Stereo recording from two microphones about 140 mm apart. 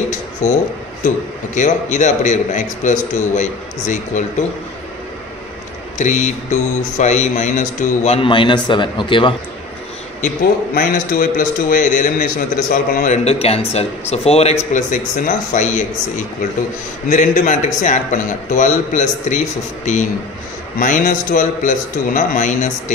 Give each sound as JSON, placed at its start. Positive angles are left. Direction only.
{"t": 0.1, "sound": "a sound", "side_deg": 60}
{"t": 1.0, "sound": "a man's voice", "side_deg": 65}
{"t": 5.9, "sound": "a man's voice", "side_deg": 60}
{"t": 8.3, "sound": "speech", "side_deg": 35}
{"t": 10.2, "sound": "a man's voice", "side_deg": 75}
{"t": 13.2, "sound": "a man's voice", "side_deg": 45}
{"t": 14.7, "sound": "a man's voice", "side_deg": 65}